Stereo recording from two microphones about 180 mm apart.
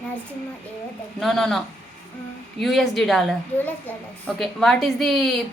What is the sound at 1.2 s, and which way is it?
A child's voice, centre (ahead or behind).